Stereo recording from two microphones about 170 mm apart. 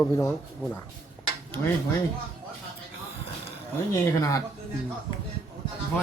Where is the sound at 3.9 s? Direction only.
20° left (ahead or behind).